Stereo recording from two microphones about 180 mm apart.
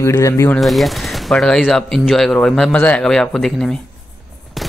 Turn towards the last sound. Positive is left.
turn(degrees=0)  # may be behind; listen again after turning